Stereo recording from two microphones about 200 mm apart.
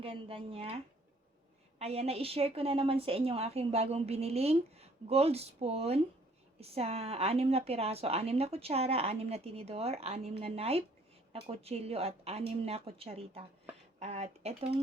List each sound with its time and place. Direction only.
0.0 s speech: 25° right (ahead or behind)
1.8 s a woman's voice: 30° right (ahead or behind)